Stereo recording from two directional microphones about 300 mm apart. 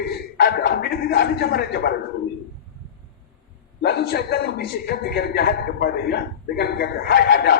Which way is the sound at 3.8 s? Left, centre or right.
Left.